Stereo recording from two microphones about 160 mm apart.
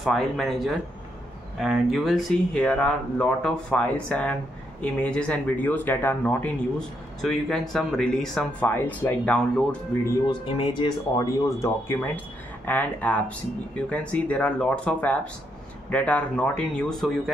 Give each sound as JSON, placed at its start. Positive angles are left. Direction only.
{"t": 0.0, "sound": "speech", "side_deg": 0}
{"t": 10.2, "sound": "speech", "side_deg": 30}